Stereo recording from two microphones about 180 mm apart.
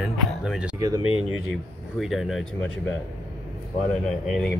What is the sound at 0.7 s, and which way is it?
Speech, 20° right (ahead or behind).